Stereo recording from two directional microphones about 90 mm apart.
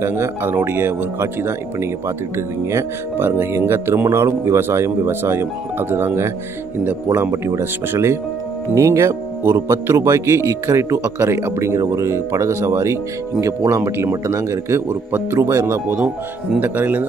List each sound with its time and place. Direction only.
0.0 s speech: 30° right (ahead or behind)
7.4 s speech: 30° right (ahead or behind)
16.5 s speech: 20° right (ahead or behind)